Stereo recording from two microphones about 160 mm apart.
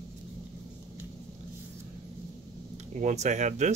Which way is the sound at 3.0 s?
50° right (ahead or behind).